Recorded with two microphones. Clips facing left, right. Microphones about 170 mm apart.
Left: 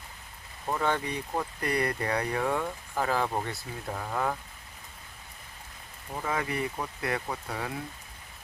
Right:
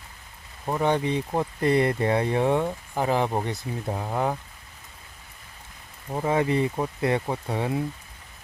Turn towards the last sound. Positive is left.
turn(degrees=-25)  # may be behind; listen again after turning